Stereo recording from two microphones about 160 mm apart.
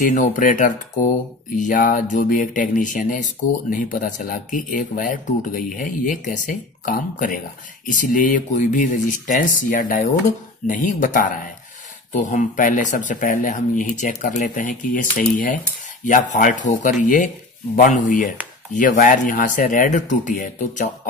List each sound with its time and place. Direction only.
0.0 s speech: 55° left (ahead or behind)